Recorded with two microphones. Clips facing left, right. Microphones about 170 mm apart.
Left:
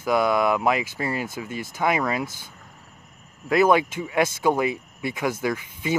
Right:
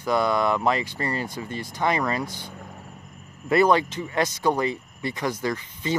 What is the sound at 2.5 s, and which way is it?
Cricket, 55° right (ahead or behind).